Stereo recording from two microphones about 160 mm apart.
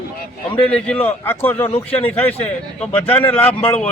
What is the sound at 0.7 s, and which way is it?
Speech, 5° left (ahead or behind).